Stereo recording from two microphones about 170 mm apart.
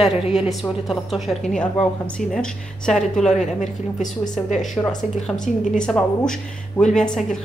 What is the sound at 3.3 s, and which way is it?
A woman's voice, 45° left (ahead or behind).